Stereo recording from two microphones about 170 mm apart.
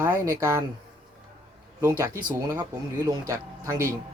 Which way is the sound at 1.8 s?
15° right (ahead or behind).